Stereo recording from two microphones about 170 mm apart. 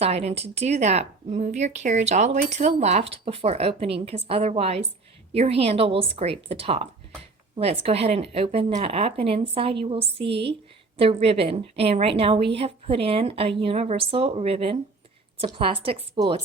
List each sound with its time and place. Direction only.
0.0 s a woman's voice: 35° right (ahead or behind)